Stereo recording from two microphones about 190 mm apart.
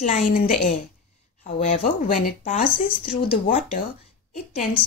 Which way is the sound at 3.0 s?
25° left (ahead or behind).